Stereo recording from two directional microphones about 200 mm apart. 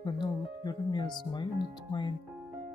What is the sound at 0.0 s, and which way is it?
Speech, 20° left (ahead or behind).